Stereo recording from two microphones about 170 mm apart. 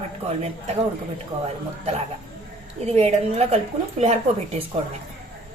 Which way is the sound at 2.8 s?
40° right (ahead or behind).